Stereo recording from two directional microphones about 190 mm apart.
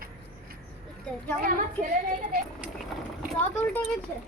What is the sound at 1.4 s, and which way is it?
Speech, 50° right (ahead or behind).